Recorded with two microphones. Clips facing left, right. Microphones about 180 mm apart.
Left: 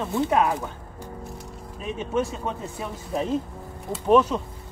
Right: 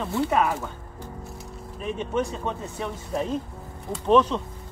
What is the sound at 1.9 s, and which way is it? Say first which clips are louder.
Speech: left 1 dB; 5° left (ahead or behind).